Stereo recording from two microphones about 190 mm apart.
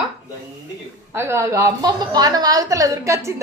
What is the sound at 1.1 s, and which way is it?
A woman's voice, 15° right (ahead or behind).